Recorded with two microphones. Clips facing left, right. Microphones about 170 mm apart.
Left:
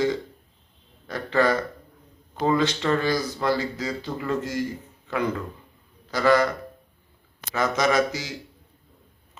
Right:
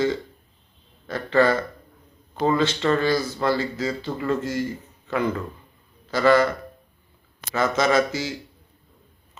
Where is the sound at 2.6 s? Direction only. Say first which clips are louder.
Right 2 dB; 15° left (ahead or behind).